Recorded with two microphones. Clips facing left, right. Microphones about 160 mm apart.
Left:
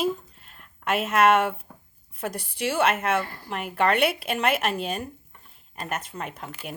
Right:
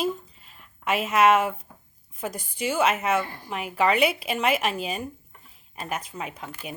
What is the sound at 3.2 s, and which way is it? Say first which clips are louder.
Speech: right 1 dB; 20° right (ahead or behind).